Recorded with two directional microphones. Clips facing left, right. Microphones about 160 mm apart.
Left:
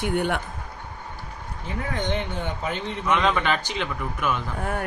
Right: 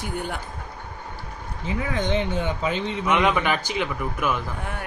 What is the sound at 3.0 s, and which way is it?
A man's voice, 10° right (ahead or behind).